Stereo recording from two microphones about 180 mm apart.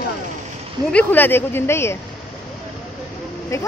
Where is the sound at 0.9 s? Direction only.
10° left (ahead or behind).